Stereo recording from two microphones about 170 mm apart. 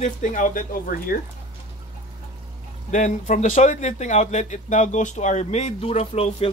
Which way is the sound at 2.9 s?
50° left (ahead or behind).